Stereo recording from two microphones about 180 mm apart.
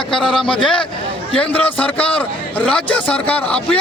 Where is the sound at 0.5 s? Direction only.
25° left (ahead or behind).